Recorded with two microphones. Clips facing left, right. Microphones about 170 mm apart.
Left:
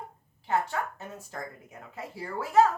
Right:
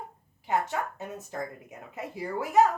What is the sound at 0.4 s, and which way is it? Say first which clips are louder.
Speech: even; 20° right (ahead or behind).